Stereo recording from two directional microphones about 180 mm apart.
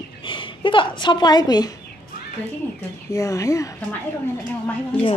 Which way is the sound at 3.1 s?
20° left (ahead or behind).